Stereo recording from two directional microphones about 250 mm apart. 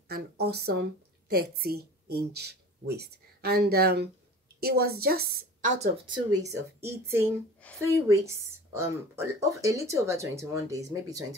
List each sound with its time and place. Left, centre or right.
0.1 s a woman's voice: right
5.8 s speech: centre
7.6 s a woman's voice: centre
8.1 s speech: centre